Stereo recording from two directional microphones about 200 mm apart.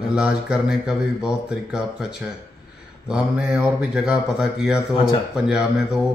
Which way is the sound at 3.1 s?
5° right (ahead or behind).